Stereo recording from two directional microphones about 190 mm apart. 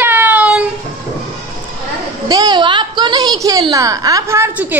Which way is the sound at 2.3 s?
20° right (ahead or behind).